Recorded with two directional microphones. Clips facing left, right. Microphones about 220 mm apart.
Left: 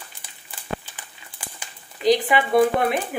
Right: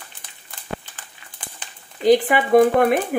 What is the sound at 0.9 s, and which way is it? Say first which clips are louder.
Crumpling: left 1 dB; 10° left (ahead or behind).